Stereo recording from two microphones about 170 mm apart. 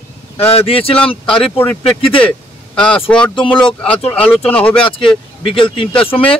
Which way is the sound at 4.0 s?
35° left (ahead or behind).